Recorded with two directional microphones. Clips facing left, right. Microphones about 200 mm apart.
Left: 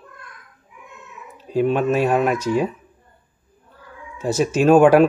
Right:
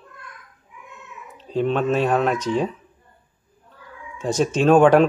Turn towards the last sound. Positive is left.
turn(degrees=10)  # may be behind; listen again after turning